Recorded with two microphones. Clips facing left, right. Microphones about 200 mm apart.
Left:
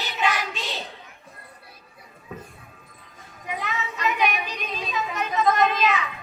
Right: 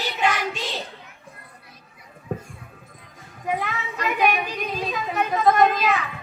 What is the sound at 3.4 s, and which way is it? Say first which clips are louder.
Child singing: right 4 dB; 55° right (ahead or behind).